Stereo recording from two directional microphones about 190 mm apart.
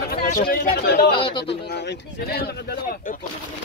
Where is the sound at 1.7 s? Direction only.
65° left (ahead or behind).